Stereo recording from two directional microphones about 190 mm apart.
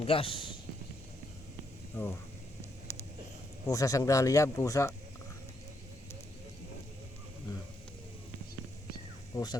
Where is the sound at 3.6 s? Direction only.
20° left (ahead or behind).